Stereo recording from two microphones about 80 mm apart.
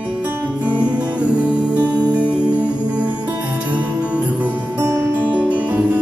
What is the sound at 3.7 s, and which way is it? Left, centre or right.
Music, centre.